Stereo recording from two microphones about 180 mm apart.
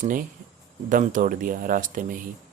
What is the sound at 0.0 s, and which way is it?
Speech, 50° right (ahead or behind).